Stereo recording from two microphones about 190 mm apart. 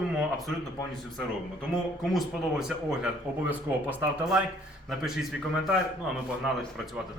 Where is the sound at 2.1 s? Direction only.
5° right (ahead or behind).